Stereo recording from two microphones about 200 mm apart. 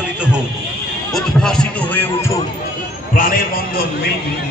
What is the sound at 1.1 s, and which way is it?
Speech, 5° left (ahead or behind).